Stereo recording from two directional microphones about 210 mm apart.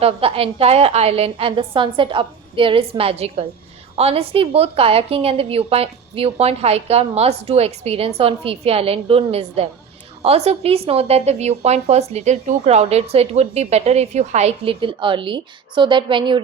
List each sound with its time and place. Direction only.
0.0 s a woman's voice: 25° right (ahead or behind)